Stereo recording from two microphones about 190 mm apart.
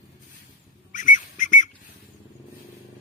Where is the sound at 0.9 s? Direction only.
40° left (ahead or behind).